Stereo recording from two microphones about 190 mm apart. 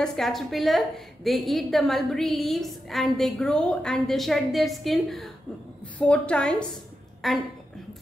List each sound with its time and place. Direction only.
0.0 s a woman's voice: centre (ahead or behind)